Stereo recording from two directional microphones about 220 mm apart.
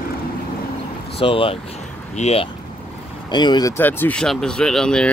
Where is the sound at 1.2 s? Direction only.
25° left (ahead or behind).